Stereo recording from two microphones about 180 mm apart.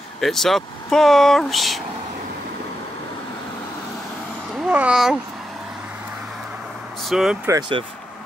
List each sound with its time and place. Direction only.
0.2 s speech: centre (ahead or behind)
4.6 s speech: 5° right (ahead or behind)
7.1 s speech: 5° right (ahead or behind)
7.4 s speech: 20° right (ahead or behind)